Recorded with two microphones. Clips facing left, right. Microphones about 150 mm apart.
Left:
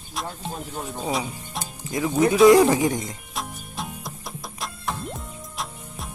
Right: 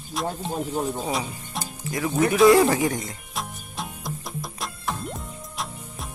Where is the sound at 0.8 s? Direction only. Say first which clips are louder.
Left 2 dB; centre (ahead or behind).